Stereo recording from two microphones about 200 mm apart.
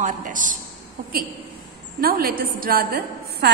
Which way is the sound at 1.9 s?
45° right (ahead or behind).